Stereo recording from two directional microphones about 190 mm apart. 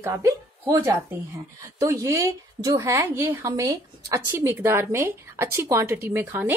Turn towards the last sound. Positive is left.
turn(degrees=-10)  # may be behind; listen again after turning